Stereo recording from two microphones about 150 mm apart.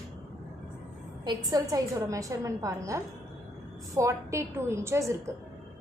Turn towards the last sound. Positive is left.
turn(degrees=-20)  # may be behind; listen again after turning